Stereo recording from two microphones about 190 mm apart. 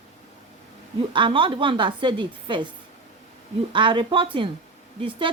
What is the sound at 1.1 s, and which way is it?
Speech, 25° right (ahead or behind).